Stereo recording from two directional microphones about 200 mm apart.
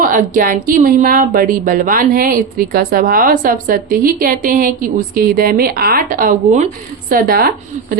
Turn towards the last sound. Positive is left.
turn(degrees=-50)  # may be behind; listen again after turning